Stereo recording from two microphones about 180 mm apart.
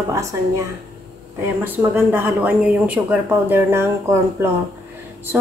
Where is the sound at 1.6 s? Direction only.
10° right (ahead or behind).